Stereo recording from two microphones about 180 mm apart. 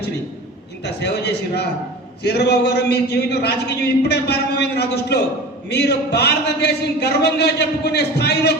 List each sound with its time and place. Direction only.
0.9 s a man's voice: 70° left (ahead or behind)